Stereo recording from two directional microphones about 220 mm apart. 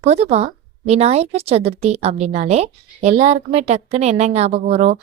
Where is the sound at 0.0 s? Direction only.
30° right (ahead or behind).